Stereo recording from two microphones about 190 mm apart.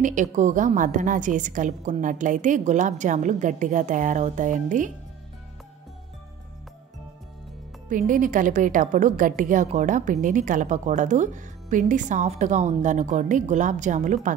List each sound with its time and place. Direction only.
0.0 s a woman's voice: 40° right (ahead or behind)
7.9 s a woman's voice: 45° right (ahead or behind)